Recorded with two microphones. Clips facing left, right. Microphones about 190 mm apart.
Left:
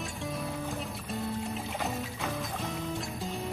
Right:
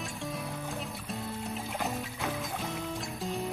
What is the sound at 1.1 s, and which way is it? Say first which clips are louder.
Music: left 4 dB; centre (ahead or behind).